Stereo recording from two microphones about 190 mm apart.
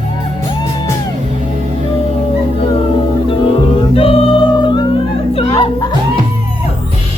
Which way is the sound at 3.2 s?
30° left (ahead or behind).